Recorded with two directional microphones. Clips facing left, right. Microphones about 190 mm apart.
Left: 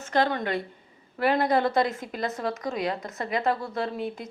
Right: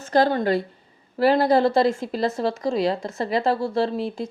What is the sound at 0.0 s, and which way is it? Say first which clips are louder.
A woman's voice: right 6 dB; 35° right (ahead or behind).